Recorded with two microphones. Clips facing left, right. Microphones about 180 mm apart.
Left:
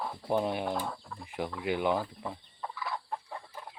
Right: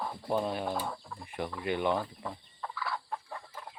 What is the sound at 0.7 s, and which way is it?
Speech, centre (ahead or behind).